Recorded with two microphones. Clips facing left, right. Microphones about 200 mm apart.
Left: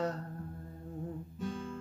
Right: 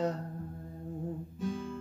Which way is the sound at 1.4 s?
5° right (ahead or behind).